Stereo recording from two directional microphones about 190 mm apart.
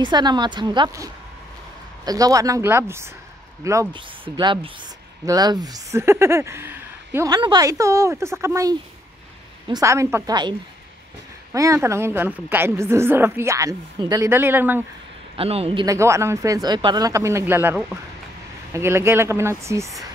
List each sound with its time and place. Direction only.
0.0 s a woman's voice: 20° right (ahead or behind)
7.2 s a woman's voice: 20° right (ahead or behind)
11.5 s a woman's voice: 15° right (ahead or behind)
15.3 s a man's voice: 30° right (ahead or behind)
15.8 s a woman's voice: 15° right (ahead or behind)